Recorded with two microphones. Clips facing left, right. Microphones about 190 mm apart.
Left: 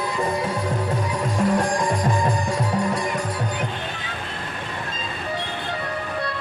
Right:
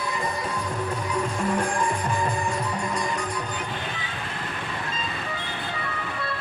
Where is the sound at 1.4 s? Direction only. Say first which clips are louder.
Left 6 dB; 90° left.